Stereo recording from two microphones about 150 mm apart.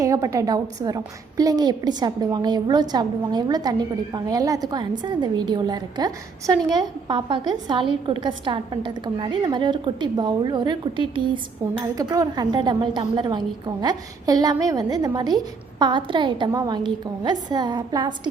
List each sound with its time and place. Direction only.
0.0 s a woman's voice: 20° right (ahead or behind)
11.6 s a woman's voice: 20° right (ahead or behind)